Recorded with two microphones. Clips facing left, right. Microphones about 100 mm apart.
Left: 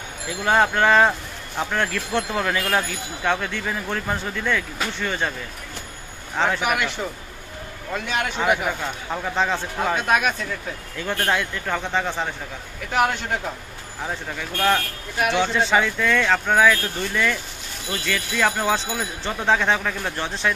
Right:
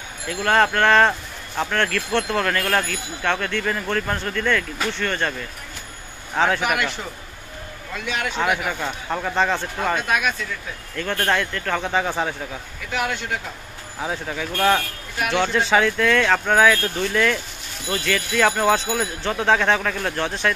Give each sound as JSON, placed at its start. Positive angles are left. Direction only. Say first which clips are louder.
{"t": 0.3, "sound": "speech", "louder": "right 1 dB", "side_deg": 10}
{"t": 6.3, "sound": "speech", "louder": "right 2 dB", "side_deg": 0}
{"t": 8.4, "sound": "speech", "louder": "left 1 dB", "side_deg": 0}
{"t": 10.0, "sound": "speech", "louder": "left 2 dB", "side_deg": 35}
{"t": 11.0, "sound": "speech", "louder": "right 1 dB", "side_deg": 10}
{"t": 11.8, "sound": "speech", "louder": "right 4 dB", "side_deg": -5}
{"t": 14.0, "sound": "speech", "louder": "right 3 dB", "side_deg": 0}